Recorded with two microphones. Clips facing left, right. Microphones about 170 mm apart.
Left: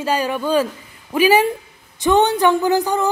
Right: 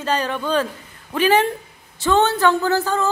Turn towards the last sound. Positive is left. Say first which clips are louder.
# left 2 dB
turn(degrees=15)  # may be behind; listen again after turning